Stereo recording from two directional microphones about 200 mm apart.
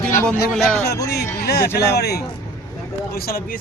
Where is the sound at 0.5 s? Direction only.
Centre (ahead or behind).